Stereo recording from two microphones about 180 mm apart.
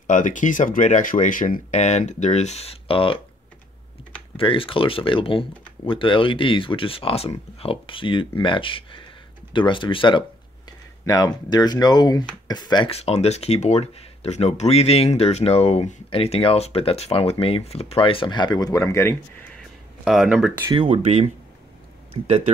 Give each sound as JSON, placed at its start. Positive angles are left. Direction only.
{"t": 0.0, "sound": "speech", "side_deg": 45}
{"t": 4.4, "sound": "speech", "side_deg": 30}
{"t": 19.6, "sound": "a sound", "side_deg": 0}
{"t": 20.7, "sound": "speech", "side_deg": -35}